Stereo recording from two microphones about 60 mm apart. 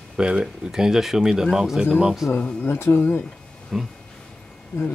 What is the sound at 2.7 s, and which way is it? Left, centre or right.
Speech, left.